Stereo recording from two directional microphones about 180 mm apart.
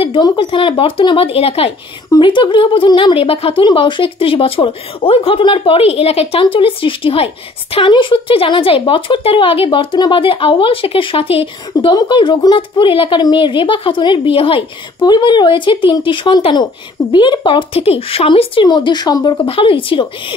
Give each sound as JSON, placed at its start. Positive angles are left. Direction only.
{"t": 0.0, "sound": "speech", "side_deg": 25}